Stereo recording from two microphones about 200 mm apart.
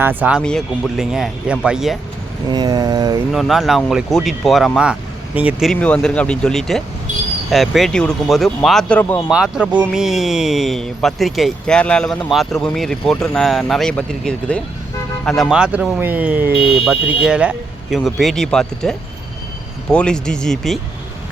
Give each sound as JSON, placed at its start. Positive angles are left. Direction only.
{"t": 0.0, "sound": "speech", "side_deg": -10}
{"t": 2.5, "sound": "mantra", "side_deg": -20}
{"t": 3.3, "sound": "speech", "side_deg": 0}
{"t": 9.3, "sound": "speech", "side_deg": -5}